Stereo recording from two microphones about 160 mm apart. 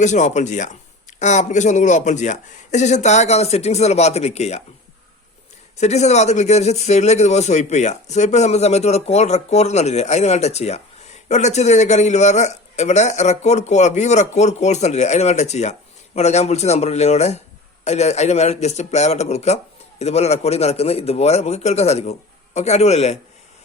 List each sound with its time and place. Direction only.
0.0 s speech: 50° left (ahead or behind)
5.7 s speech: 45° left (ahead or behind)